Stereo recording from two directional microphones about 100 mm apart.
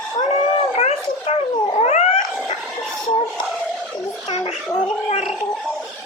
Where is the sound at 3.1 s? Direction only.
45° left (ahead or behind).